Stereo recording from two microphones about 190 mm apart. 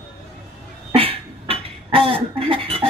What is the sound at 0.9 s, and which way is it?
Beatboxing, 30° right (ahead or behind).